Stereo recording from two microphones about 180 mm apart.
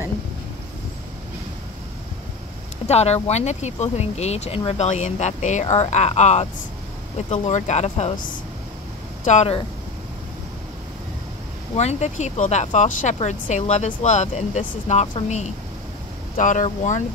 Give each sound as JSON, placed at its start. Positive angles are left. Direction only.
{"t": 2.9, "sound": "speech", "side_deg": 35}
{"t": 11.7, "sound": "speech", "side_deg": 35}